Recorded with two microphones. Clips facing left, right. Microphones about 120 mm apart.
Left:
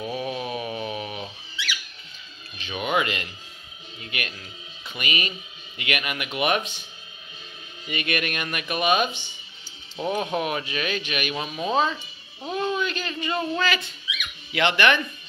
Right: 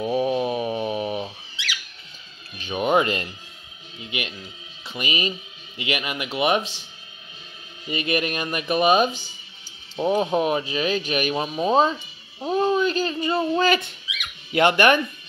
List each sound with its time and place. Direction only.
0.1 s a sound: 35° right (ahead or behind)
2.6 s speech: 40° right (ahead or behind)
4.0 s a man's voice: 20° right (ahead or behind)
7.9 s speech: 30° right (ahead or behind)
9.9 s speech: 25° right (ahead or behind)
12.4 s a sound: 35° right (ahead or behind)
14.5 s speech: 45° right (ahead or behind)